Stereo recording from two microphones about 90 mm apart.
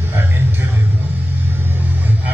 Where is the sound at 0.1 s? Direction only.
20° right (ahead or behind).